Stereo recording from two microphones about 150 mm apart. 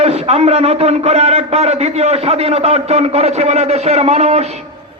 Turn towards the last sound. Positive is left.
turn(degrees=-45)  # may be behind; listen again after turning